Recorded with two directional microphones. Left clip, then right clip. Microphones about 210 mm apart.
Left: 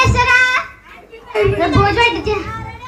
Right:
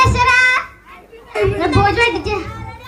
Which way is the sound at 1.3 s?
35° right (ahead or behind).